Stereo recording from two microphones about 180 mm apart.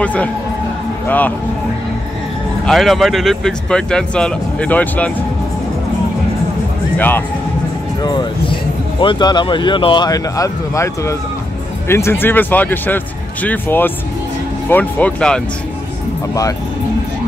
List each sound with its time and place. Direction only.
0.0 s speech: 5° left (ahead or behind)
2.6 s speech: centre (ahead or behind)
7.0 s speech: 10° left (ahead or behind)
8.0 s speech: 25° left (ahead or behind); by 15.4 s 5° left (ahead or behind)